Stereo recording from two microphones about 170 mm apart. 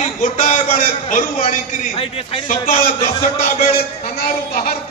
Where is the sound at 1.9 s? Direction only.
35° left (ahead or behind).